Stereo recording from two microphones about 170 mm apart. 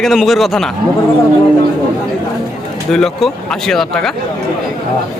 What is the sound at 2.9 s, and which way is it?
Speech, centre (ahead or behind).